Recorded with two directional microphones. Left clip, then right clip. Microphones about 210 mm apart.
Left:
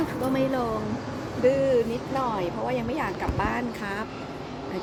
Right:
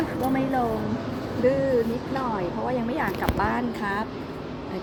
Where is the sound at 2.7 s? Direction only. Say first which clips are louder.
Right 1 dB; 20° left (ahead or behind).